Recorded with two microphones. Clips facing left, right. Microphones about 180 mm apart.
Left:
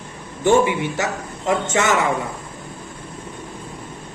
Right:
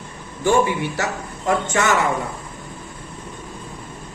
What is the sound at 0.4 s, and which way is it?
Speech, 20° left (ahead or behind).